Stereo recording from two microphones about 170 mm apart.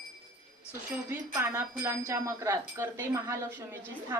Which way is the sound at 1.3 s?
20° right (ahead or behind).